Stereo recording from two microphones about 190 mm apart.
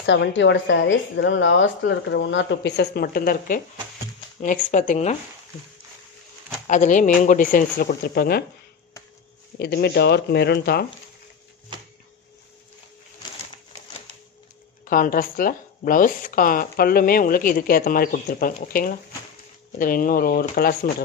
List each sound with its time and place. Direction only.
0.0 s a woman's voice: 70° left (ahead or behind); by 5.1 s 40° left (ahead or behind)
6.7 s speech: 40° left (ahead or behind)
9.6 s speech: 55° left (ahead or behind)
14.9 s speech: 50° left (ahead or behind)